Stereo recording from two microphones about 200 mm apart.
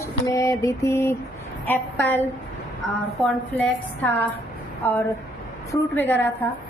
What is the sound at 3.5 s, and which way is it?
A woman's voice, 5° left (ahead or behind).